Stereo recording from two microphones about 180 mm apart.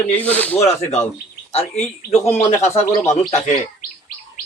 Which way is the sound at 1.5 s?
35° left (ahead or behind).